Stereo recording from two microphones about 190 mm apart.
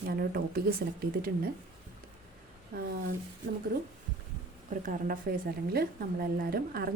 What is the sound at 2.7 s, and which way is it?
Speech, 50° right (ahead or behind).